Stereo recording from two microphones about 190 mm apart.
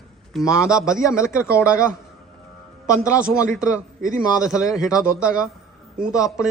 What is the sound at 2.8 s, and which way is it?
Speech, 15° left (ahead or behind).